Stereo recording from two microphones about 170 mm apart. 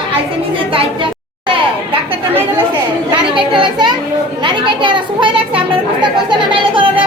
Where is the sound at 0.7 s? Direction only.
30° right (ahead or behind).